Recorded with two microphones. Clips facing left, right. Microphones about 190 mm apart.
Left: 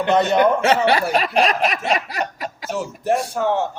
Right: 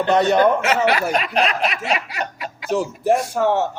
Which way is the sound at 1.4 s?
40° left (ahead or behind).